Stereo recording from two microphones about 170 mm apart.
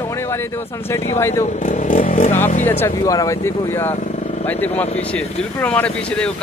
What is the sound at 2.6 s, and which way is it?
Speech, 15° left (ahead or behind).